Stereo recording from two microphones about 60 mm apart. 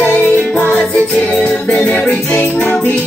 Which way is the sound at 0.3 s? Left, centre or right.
Left.